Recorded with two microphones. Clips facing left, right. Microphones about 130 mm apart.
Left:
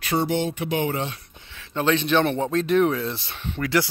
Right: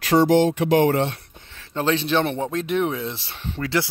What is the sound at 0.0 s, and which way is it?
Speech, 90° right.